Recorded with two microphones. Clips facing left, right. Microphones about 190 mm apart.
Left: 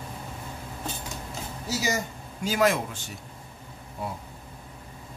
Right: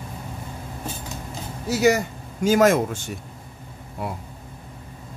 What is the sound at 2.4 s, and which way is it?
Speech, 45° right (ahead or behind).